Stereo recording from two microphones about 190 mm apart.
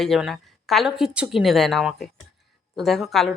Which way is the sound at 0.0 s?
Centre (ahead or behind).